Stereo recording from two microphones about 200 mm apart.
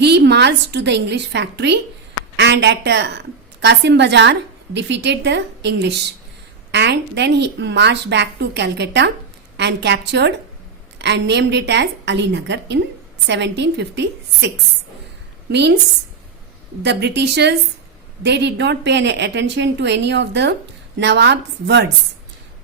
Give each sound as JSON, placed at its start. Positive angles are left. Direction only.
{"t": 0.0, "sound": "a woman's voice", "side_deg": -55}
{"t": 16.8, "sound": "a woman's voice", "side_deg": -60}